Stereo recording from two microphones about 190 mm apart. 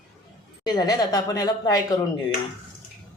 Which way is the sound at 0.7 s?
20° left (ahead or behind).